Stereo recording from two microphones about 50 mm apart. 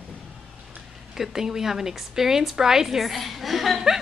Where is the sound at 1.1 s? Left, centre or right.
Centre.